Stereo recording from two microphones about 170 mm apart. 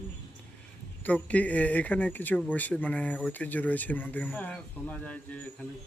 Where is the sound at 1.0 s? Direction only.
10° left (ahead or behind).